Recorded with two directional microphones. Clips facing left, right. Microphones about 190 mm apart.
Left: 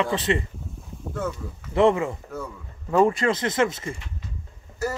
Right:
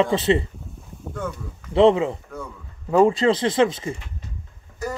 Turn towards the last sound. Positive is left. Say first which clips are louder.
# left 1 dB
turn(degrees=5)  # may be behind; listen again after turning